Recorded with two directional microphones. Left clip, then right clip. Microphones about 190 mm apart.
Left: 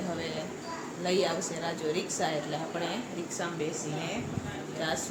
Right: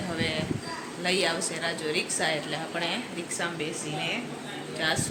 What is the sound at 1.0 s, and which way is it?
A woman's voice, centre (ahead or behind).